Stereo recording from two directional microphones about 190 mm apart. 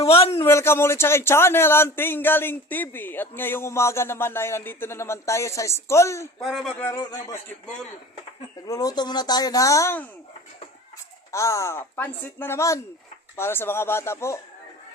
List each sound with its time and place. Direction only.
0.0 s a sound: 30° left (ahead or behind)
0.3 s a man's voice: 15° left (ahead or behind)
6.4 s speech: centre (ahead or behind)
6.7 s a man's voice: 10° left (ahead or behind)
8.6 s speech: 20° left (ahead or behind)
11.3 s a man's voice: 15° left (ahead or behind)